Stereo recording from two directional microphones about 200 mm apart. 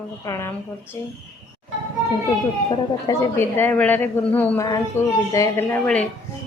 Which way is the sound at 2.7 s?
15° left (ahead or behind).